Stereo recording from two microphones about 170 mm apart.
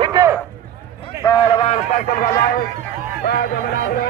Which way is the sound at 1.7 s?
50° left (ahead or behind).